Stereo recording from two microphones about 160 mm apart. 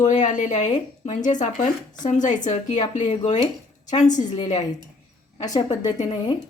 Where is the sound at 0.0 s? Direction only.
50° left (ahead or behind).